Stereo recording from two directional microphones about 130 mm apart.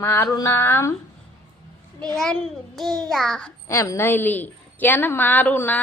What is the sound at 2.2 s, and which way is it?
Child singing, 5° left (ahead or behind).